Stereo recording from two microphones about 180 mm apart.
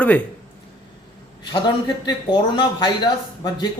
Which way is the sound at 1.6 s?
25° left (ahead or behind).